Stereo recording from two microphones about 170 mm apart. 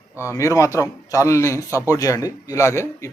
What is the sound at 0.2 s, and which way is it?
A man's voice, 15° left (ahead or behind).